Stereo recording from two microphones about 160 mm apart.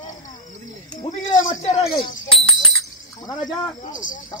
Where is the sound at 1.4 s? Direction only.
45° left (ahead or behind).